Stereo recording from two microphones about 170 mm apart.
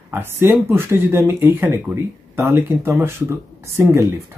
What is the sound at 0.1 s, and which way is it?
Speech, 15° right (ahead or behind).